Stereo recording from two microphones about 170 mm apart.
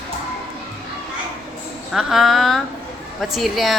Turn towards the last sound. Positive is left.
turn(degrees=0)  # may be behind; listen again after turning